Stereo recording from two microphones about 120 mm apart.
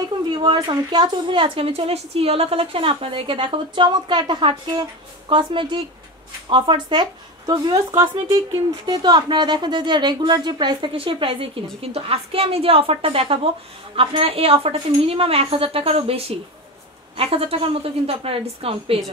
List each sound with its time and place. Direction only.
0.4 s a woman's voice: 40° right (ahead or behind)